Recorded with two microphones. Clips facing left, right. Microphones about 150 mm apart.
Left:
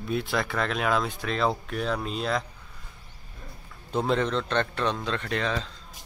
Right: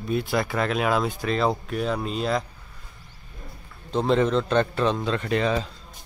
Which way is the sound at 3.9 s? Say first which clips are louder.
Right 4 dB; centre (ahead or behind).